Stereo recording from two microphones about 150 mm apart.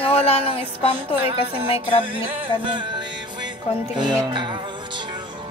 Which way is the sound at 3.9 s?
30° right (ahead or behind).